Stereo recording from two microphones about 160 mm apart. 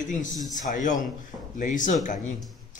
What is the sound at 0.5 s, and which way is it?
A man's voice, 55° left (ahead or behind).